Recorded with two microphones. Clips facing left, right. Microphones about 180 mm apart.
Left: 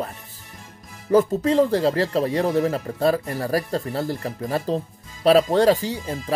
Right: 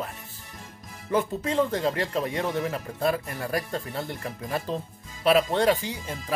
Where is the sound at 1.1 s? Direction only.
40° left (ahead or behind).